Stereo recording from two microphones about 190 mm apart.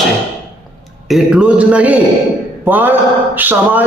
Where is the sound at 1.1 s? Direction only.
5° right (ahead or behind).